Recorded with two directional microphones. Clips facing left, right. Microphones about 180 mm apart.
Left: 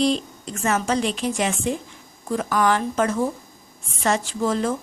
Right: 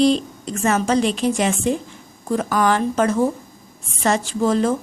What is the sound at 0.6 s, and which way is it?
Speech, 35° right (ahead or behind).